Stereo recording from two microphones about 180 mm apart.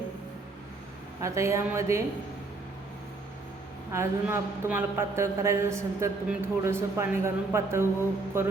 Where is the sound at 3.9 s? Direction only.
15° right (ahead or behind).